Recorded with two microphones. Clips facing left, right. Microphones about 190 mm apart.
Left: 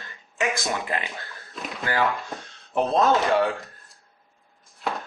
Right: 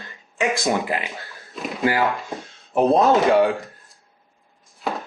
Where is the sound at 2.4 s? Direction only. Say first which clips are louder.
Right 8 dB; centre (ahead or behind).